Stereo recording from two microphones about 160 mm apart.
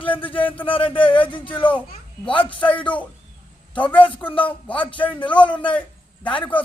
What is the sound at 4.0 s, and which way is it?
Speech, 30° left (ahead or behind).